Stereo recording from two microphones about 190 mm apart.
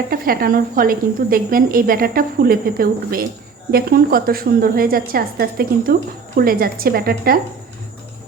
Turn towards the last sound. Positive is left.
turn(degrees=-50)  # may be behind; listen again after turning